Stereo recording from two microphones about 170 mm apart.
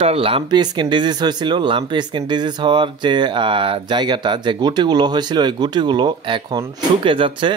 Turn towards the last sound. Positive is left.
turn(degrees=-30)  # may be behind; listen again after turning